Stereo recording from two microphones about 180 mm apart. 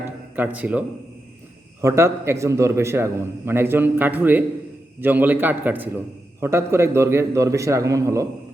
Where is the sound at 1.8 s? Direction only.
15° right (ahead or behind).